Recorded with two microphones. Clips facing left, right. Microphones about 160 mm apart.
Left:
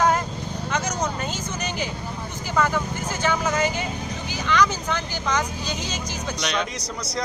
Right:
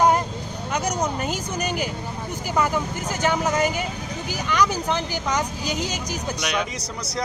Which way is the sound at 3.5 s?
40° right (ahead or behind).